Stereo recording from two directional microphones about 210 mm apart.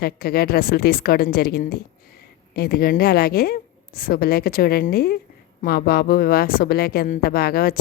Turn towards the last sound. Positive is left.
turn(degrees=45)  # may be behind; listen again after turning